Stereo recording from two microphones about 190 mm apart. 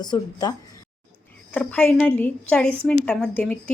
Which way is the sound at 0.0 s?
20° left (ahead or behind).